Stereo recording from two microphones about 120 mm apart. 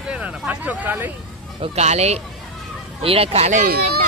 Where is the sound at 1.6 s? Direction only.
65° right (ahead or behind).